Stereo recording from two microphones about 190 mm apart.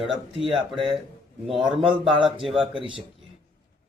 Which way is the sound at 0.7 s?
Centre (ahead or behind).